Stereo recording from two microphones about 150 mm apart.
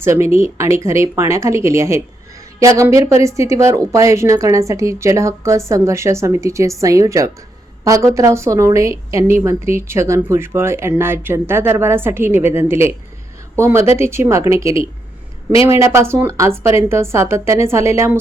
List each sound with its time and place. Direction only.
0.0 s a woman's voice: 20° right (ahead or behind)